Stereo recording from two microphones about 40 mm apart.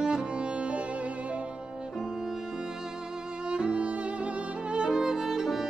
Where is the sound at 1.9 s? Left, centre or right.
Centre.